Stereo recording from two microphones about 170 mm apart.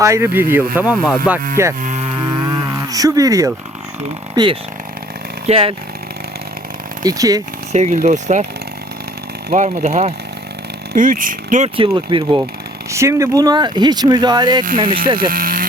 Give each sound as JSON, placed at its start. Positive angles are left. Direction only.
{"t": 0.0, "sound": "speech", "side_deg": -15}
{"t": 1.8, "sound": "moo", "side_deg": -40}
{"t": 5.5, "sound": "speech", "side_deg": -35}
{"t": 7.0, "sound": "speech", "side_deg": -20}
{"t": 7.7, "sound": "speech", "side_deg": -40}
{"t": 9.5, "sound": "speech", "side_deg": -40}
{"t": 10.9, "sound": "speech", "side_deg": -55}
{"t": 11.8, "sound": "speech", "side_deg": -30}
{"t": 12.9, "sound": "speech", "side_deg": -15}
{"t": 14.8, "sound": "speech", "side_deg": -55}